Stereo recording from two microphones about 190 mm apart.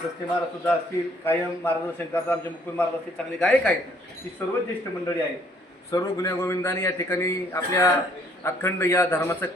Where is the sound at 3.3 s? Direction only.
5° left (ahead or behind).